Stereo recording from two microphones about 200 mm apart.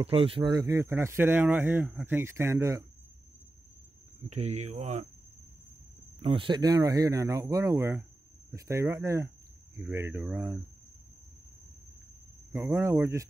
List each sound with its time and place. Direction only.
0.0 s speech: 30° right (ahead or behind)
4.3 s speech: 35° right (ahead or behind)
6.2 s speech: 25° right (ahead or behind); by 10.6 s 5° right (ahead or behind)
12.5 s speech: 15° right (ahead or behind)